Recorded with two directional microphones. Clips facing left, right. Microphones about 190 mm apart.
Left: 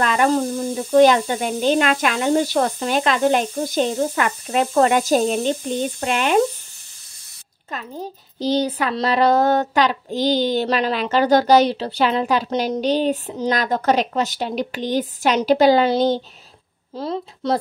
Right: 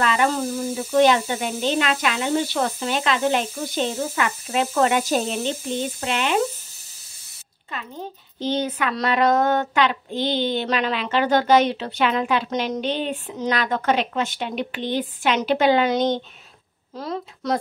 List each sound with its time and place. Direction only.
0.0 s speech: 45° left (ahead or behind)
7.7 s a woman's voice: 40° left (ahead or behind)